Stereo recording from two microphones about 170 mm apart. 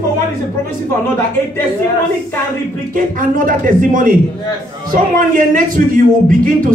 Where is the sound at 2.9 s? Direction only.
55° right (ahead or behind).